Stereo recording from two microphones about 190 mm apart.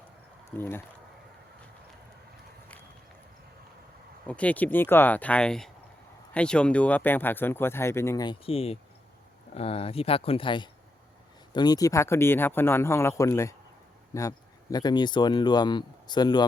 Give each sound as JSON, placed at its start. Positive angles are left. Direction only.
{"t": 0.5, "sound": "speech", "side_deg": 10}
{"t": 4.3, "sound": "speech", "side_deg": 5}